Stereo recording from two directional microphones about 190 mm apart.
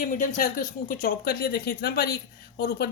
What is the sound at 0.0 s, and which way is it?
Speech, 45° left (ahead or behind).